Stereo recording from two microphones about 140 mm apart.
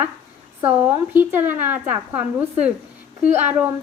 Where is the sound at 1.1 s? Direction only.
15° right (ahead or behind).